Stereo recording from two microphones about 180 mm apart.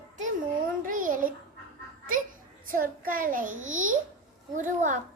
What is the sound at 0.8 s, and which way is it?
Speech, 50° right (ahead or behind).